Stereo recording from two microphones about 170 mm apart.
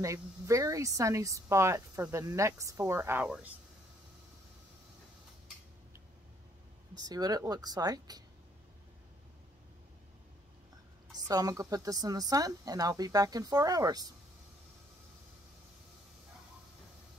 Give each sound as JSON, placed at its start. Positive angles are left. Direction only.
{"t": 0.0, "sound": "speech", "side_deg": -20}
{"t": 7.0, "sound": "speech", "side_deg": -25}
{"t": 11.2, "sound": "speech", "side_deg": -20}